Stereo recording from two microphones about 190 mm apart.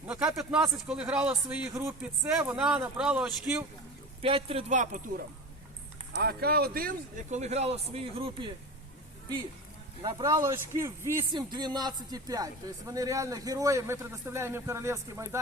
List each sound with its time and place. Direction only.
0.1 s speech: 5° right (ahead or behind)
4.2 s a man's voice: 30° right (ahead or behind)
6.1 s a man's voice: 55° right (ahead or behind); by 8.5 s 25° right (ahead or behind)
10.0 s speech: 25° right (ahead or behind)